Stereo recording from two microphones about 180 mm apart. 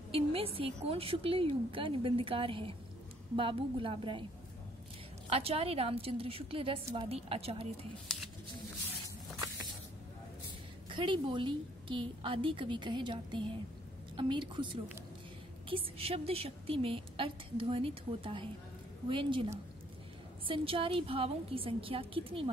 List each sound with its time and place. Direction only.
0.1 s a woman's voice: 30° right (ahead or behind)
5.3 s a woman's voice: 35° right (ahead or behind)
10.9 s a woman's voice: 25° right (ahead or behind)
20.4 s a woman's voice: 30° right (ahead or behind)